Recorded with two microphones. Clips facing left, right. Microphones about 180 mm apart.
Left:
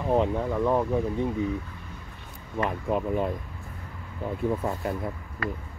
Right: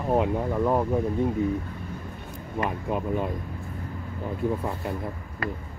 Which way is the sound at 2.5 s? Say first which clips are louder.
Left 1 dB; centre (ahead or behind).